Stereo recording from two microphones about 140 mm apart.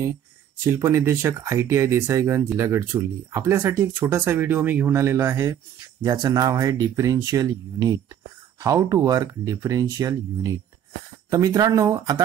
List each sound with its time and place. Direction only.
0.7 s speech: 20° right (ahead or behind)